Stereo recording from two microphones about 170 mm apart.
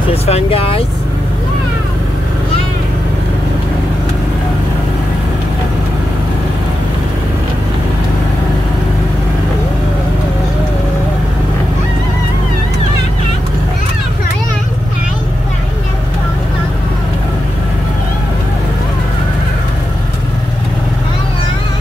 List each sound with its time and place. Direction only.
0.1 s speech: 35° left (ahead or behind)